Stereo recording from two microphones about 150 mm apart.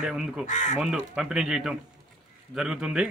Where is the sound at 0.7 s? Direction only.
5° right (ahead or behind).